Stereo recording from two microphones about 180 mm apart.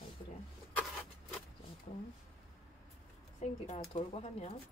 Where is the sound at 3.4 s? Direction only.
40° left (ahead or behind).